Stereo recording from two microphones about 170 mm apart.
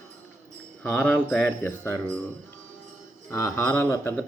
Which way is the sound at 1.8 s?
15° right (ahead or behind).